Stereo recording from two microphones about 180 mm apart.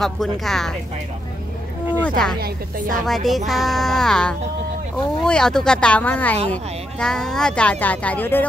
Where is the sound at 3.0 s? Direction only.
Centre (ahead or behind).